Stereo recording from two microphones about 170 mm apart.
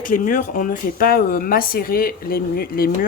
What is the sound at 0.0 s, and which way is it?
A woman's voice, 55° left (ahead or behind).